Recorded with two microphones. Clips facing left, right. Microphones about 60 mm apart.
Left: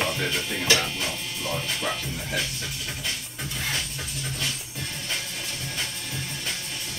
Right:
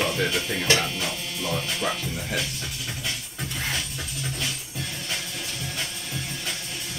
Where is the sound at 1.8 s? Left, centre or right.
Right.